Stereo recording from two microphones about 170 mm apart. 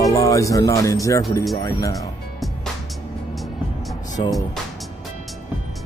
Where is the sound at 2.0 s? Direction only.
Centre (ahead or behind).